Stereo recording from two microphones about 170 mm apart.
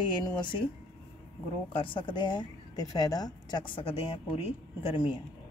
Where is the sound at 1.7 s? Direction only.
30° left (ahead or behind).